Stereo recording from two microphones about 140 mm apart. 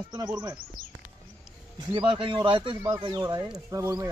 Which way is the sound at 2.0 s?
35° right (ahead or behind).